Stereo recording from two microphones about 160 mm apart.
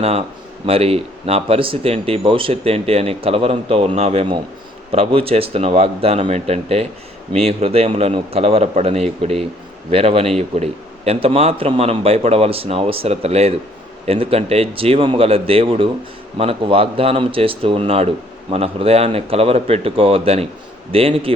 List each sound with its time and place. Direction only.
0.0 s a man's voice: 40° right (ahead or behind)